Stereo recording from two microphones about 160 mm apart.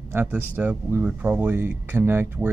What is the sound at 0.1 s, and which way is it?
Speech, 10° right (ahead or behind).